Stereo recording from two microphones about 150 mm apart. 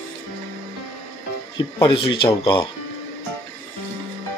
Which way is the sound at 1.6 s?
35° left (ahead or behind).